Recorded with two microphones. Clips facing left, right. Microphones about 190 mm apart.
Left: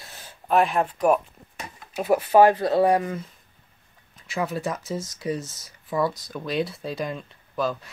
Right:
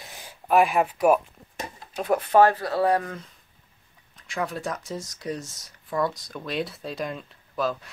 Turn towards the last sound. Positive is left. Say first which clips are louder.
# left 1 dB
turn(degrees=0)  # may be behind; listen again after turning